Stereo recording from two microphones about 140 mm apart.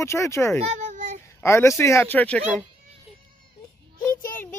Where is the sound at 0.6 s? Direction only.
60° right (ahead or behind).